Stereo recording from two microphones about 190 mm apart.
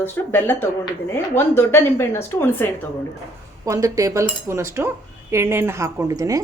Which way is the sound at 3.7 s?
15° right (ahead or behind).